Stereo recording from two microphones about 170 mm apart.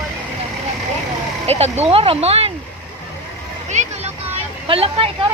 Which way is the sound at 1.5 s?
40° right (ahead or behind).